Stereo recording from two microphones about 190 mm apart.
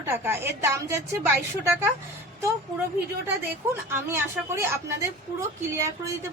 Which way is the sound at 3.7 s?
10° right (ahead or behind).